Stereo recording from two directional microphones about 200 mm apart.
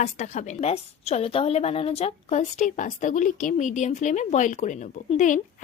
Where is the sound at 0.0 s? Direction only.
35° left (ahead or behind).